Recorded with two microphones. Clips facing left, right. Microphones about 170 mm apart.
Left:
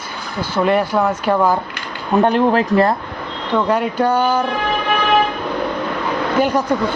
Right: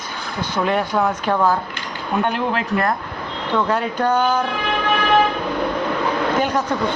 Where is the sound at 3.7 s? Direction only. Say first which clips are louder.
Left 4 dB; 10° left (ahead or behind).